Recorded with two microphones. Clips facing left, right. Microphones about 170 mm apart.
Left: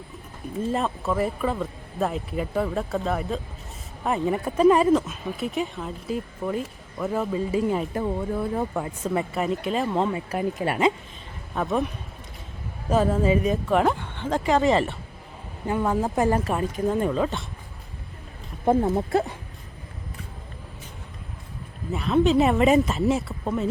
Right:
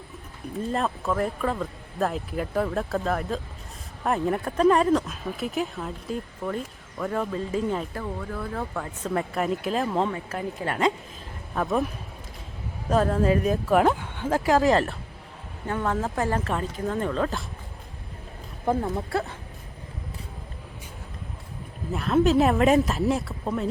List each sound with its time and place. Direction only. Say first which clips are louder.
0.7 s speech: even; centre (ahead or behind)
8.0 s speech: left 6 dB; 25° left (ahead or behind)
9.0 s speech: even; 5° left (ahead or behind)
10.1 s speech: left 4 dB; 15° left (ahead or behind)
12.9 s speech: left 1 dB; centre (ahead or behind)
15.6 s speech: left 3 dB; 10° left (ahead or behind)
18.6 s speech: left 5 dB; 20° left (ahead or behind)
21.9 s speech: left 1 dB; centre (ahead or behind)